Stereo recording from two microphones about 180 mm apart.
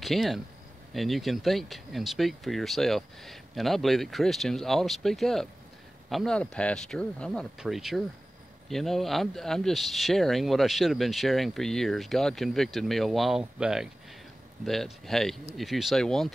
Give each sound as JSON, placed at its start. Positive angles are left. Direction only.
{"t": 0.0, "sound": "speech", "side_deg": 0}